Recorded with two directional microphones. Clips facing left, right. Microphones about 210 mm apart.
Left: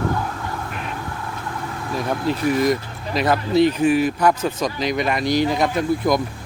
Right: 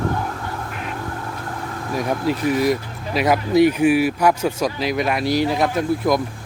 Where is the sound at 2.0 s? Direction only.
10° right (ahead or behind).